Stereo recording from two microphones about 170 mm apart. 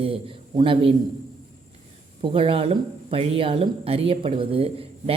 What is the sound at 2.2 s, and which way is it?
Speech, 30° right (ahead or behind).